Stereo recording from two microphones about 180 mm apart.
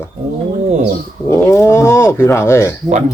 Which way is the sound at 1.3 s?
15° left (ahead or behind).